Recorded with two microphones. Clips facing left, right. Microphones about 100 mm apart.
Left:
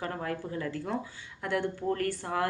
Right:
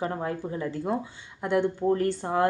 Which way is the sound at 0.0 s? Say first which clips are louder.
Right 4 dB; 20° right (ahead or behind).